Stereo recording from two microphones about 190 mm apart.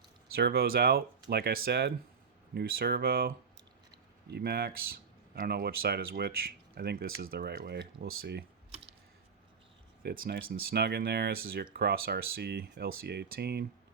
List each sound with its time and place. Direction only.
0.3 s speech: 55° right (ahead or behind)
10.0 s speech: 55° right (ahead or behind)